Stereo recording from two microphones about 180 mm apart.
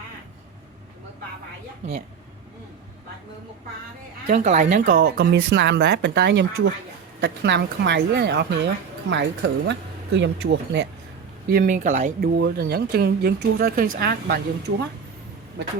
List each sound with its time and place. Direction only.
4.3 s speech: 40° right (ahead or behind)
5.0 s speech: 65° right (ahead or behind)
11.4 s speech: 55° right (ahead or behind)
12.4 s speech: 65° right (ahead or behind)